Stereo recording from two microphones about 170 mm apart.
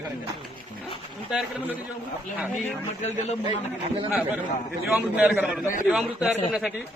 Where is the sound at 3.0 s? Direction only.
40° left (ahead or behind).